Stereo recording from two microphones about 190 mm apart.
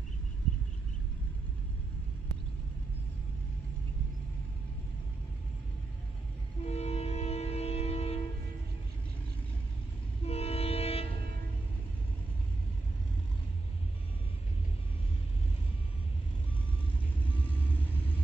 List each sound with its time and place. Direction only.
6.6 s train: 35° left (ahead or behind)
10.2 s train: 30° left (ahead or behind)